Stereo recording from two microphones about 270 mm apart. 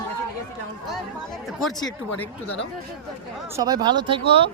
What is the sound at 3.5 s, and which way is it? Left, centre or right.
Speech, centre.